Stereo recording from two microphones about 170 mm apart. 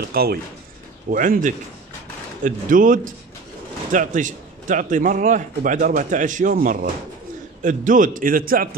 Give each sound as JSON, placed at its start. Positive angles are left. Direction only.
{"t": 0.1, "sound": "speech", "side_deg": -65}
{"t": 1.1, "sound": "a man's voice", "side_deg": -50}